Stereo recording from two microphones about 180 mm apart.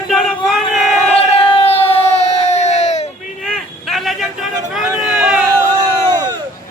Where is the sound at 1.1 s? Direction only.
30° left (ahead or behind).